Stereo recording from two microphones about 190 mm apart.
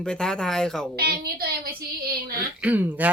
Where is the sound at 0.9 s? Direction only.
55° right (ahead or behind).